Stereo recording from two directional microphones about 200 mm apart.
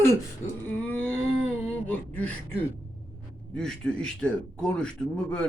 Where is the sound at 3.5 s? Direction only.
5° left (ahead or behind).